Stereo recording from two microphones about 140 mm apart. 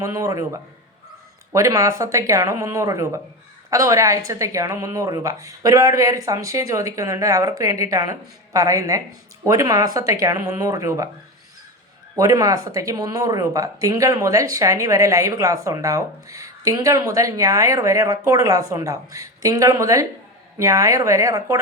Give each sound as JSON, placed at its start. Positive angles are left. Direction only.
{"t": 0.0, "sound": "speech", "side_deg": -25}
{"t": 12.1, "sound": "speech", "side_deg": -25}